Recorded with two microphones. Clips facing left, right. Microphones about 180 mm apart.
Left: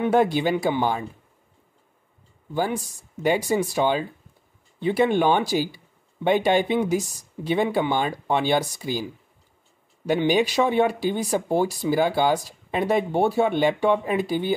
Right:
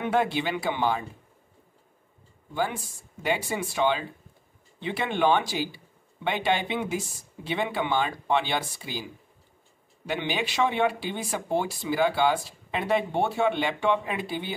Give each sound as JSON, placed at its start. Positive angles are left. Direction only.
{"t": 0.0, "sound": "speech", "side_deg": 45}
{"t": 2.5, "sound": "speech", "side_deg": 40}
{"t": 10.0, "sound": "speech", "side_deg": 40}